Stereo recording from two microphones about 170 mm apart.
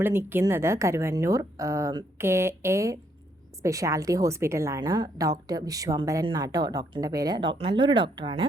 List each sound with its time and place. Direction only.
0.0 s a woman's voice: 10° right (ahead or behind); by 8.4 s 30° right (ahead or behind)